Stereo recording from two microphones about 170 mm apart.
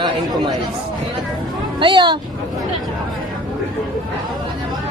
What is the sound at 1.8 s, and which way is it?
Speech, 30° right (ahead or behind).